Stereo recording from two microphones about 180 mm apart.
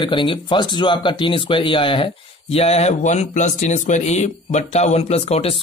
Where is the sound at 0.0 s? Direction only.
25° left (ahead or behind).